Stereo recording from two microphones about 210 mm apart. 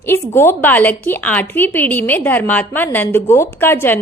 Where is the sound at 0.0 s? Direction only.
10° left (ahead or behind).